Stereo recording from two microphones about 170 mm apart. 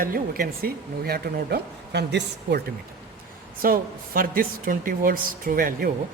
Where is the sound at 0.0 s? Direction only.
60° right (ahead or behind); by 2.6 s 80° right.